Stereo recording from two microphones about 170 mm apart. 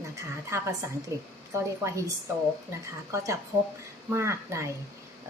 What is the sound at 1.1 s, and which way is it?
A woman's voice, 15° right (ahead or behind).